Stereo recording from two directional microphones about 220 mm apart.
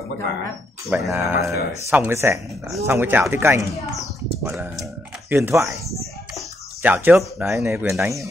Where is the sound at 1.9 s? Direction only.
10° right (ahead or behind).